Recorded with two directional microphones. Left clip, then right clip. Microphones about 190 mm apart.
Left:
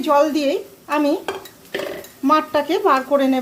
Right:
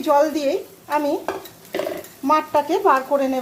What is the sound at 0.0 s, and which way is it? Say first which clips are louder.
A woman's voice: left 1 dB; 15° left (ahead or behind).